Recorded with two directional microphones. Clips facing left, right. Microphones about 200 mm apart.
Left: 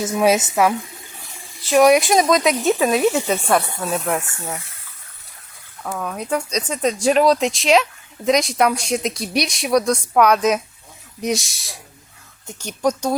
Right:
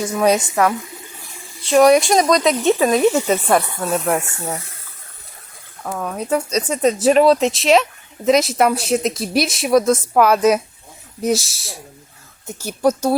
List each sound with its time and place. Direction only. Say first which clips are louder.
0.0 s a woman's voice: even; 10° left (ahead or behind)
4.2 s speech: right 3 dB; 25° right (ahead or behind)
5.8 s a woman's voice: right 2 dB; 10° right (ahead or behind)